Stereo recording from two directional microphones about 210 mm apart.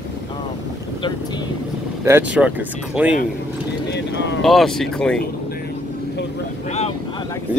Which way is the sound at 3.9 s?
55° left (ahead or behind).